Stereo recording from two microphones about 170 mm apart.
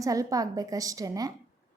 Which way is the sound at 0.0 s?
20° right (ahead or behind).